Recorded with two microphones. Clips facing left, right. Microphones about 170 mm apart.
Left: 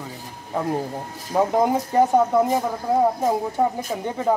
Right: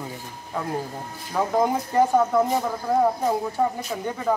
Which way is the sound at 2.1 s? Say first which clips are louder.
Left 2 dB; 15° left (ahead or behind).